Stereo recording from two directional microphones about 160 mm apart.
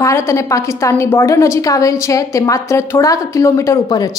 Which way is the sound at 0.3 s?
20° left (ahead or behind).